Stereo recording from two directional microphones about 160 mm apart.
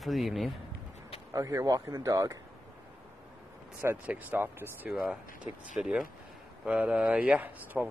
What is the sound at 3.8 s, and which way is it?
Speech, 10° right (ahead or behind).